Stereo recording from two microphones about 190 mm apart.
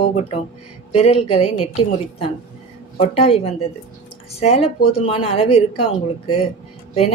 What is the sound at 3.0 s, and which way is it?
A woman's voice, 30° left (ahead or behind).